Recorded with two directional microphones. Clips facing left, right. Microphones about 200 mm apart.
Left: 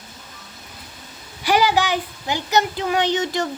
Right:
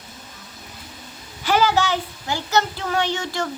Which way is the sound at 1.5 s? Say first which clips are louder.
Left 1 dB; 15° left (ahead or behind).